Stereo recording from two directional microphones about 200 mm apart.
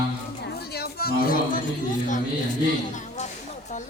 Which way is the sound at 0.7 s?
50° left (ahead or behind).